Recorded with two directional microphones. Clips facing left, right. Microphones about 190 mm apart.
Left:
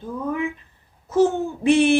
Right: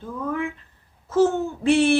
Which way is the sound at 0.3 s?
15° left (ahead or behind).